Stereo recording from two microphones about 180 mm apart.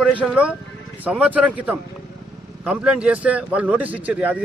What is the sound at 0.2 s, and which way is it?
A man's voice, 5° right (ahead or behind).